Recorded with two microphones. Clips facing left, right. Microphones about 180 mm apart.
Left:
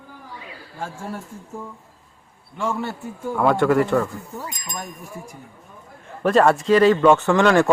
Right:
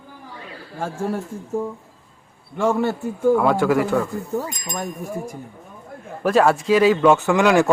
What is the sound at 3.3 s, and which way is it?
Speech, centre (ahead or behind).